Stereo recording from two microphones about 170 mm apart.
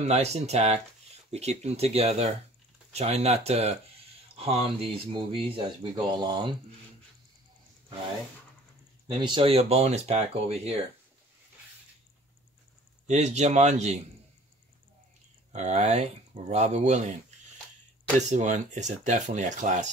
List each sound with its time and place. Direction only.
0.0 s speech: 40° right (ahead or behind)
9.0 s speech: 25° right (ahead or behind)
13.0 s speech: 40° right (ahead or behind)
15.5 s speech: 45° right (ahead or behind)
18.2 s speech: 45° right (ahead or behind)